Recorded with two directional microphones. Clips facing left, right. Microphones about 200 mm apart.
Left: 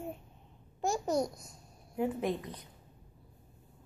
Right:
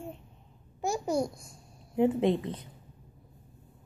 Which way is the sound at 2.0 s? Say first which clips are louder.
Right 7 dB; 25° right (ahead or behind).